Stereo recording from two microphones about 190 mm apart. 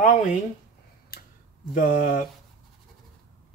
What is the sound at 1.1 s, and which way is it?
Tick-tock, 50° left (ahead or behind).